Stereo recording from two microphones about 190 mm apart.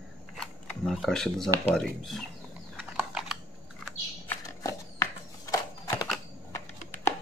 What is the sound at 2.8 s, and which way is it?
Typing, 5° right (ahead or behind).